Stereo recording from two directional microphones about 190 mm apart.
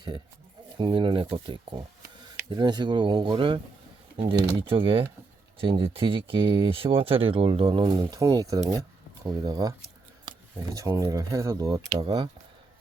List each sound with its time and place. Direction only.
0.8 s speech: 25° right (ahead or behind)